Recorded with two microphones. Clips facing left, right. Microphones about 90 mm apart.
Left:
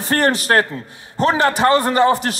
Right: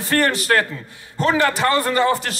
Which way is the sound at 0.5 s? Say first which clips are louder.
Left 2 dB; 35° left (ahead or behind).